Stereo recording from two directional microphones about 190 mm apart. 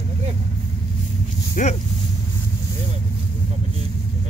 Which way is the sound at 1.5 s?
40° left (ahead or behind).